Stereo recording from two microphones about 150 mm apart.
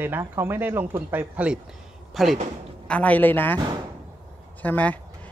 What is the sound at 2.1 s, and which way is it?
A woman's voice, centre (ahead or behind).